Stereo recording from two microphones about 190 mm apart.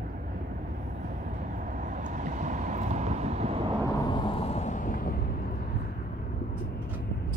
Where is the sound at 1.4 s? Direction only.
45° right (ahead or behind).